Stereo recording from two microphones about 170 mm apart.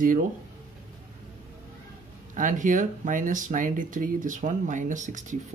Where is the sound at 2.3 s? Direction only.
50° right (ahead or behind).